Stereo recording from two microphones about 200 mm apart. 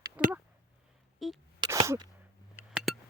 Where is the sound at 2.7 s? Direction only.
Centre (ahead or behind).